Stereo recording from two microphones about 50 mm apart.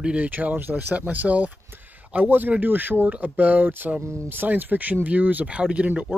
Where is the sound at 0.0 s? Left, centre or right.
Right.